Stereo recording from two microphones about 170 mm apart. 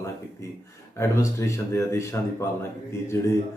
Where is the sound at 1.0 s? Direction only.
15° left (ahead or behind).